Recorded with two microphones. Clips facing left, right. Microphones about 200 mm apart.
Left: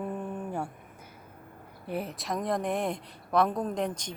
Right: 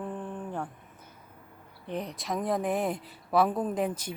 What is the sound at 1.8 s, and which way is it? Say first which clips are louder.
Speech: left 1 dB; 5° left (ahead or behind).